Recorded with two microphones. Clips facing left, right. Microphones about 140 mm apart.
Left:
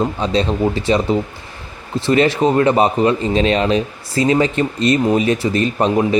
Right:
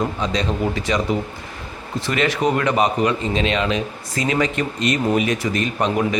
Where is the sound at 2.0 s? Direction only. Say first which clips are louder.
Left 6 dB; 30° left (ahead or behind).